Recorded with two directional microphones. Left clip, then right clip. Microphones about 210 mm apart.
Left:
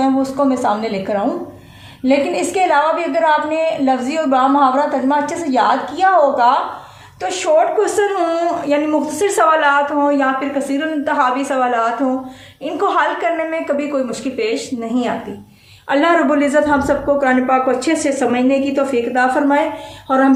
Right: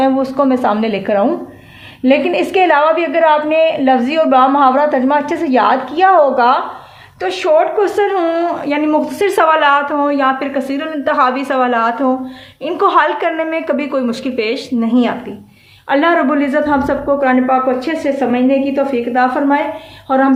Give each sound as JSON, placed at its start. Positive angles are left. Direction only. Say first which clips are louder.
{"t": 0.0, "sound": "a woman's voice", "louder": "right 3 dB", "side_deg": -45}
{"t": 15.9, "sound": "a woman's voice", "louder": "right 1 dB", "side_deg": -25}
{"t": 20.1, "sound": "a sound", "louder": "right 1 dB", "side_deg": -15}